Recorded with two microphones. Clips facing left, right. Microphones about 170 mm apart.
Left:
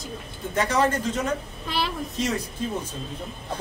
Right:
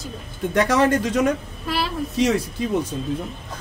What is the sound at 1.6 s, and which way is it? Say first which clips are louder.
Speech: right 5 dB; centre (ahead or behind).